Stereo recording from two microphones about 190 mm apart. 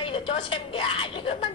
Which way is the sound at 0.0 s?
30° left (ahead or behind).